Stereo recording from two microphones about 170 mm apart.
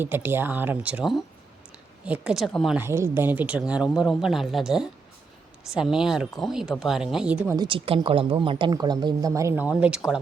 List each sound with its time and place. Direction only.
0.0 s speech: 10° right (ahead or behind)
2.7 s speech: 15° right (ahead or behind)
7.5 s speech: 25° right (ahead or behind); by 10.2 s 5° right (ahead or behind)